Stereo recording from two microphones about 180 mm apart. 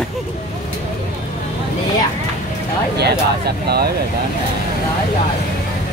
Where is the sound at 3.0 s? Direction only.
65° right (ahead or behind).